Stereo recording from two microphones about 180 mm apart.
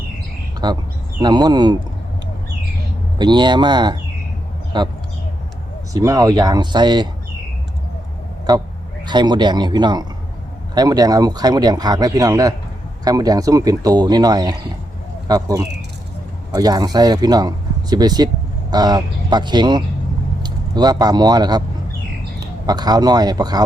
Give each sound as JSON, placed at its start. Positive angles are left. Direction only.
{"t": 0.6, "sound": "a man's voice", "side_deg": -25}
{"t": 3.2, "sound": "a man's voice", "side_deg": -25}
{"t": 8.5, "sound": "a man's voice", "side_deg": -20}
{"t": 22.6, "sound": "a man's voice", "side_deg": -20}